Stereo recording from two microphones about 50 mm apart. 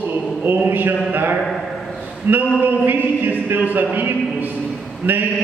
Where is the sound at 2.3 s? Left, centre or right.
Right.